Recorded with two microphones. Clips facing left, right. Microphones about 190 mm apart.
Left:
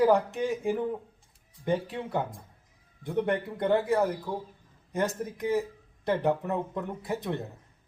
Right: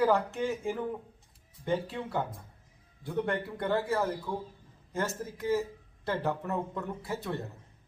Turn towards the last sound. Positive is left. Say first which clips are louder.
# left 3 dB
turn(degrees=15)  # may be behind; listen again after turning